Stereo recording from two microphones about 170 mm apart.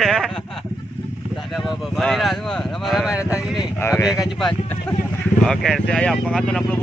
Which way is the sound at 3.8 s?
15° left (ahead or behind).